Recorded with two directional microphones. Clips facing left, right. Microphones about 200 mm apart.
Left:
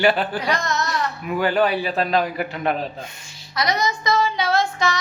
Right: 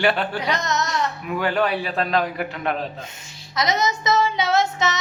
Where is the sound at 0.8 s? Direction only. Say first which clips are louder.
Even; centre (ahead or behind).